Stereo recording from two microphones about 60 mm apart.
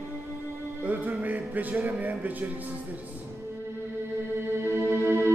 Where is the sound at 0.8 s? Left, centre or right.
Right.